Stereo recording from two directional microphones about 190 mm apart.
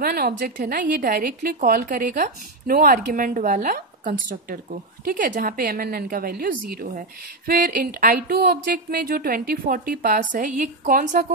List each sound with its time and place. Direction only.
0.0 s a woman's voice: 50° right (ahead or behind)